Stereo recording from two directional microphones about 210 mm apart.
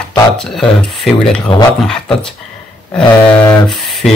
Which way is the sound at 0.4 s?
5° left (ahead or behind).